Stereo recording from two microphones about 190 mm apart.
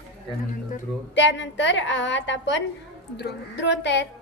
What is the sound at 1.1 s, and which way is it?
A woman's voice, 70° left (ahead or behind).